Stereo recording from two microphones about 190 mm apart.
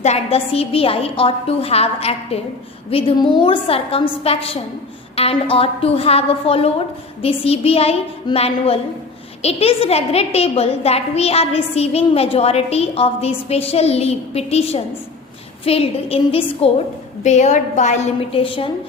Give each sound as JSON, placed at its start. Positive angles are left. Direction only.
{"t": 0.0, "sound": "a woman's voice", "side_deg": 35}